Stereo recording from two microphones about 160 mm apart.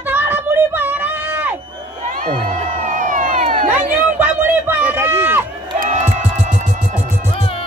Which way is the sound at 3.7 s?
10° right (ahead or behind).